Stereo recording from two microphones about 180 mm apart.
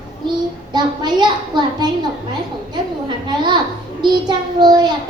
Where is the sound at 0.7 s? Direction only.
25° right (ahead or behind).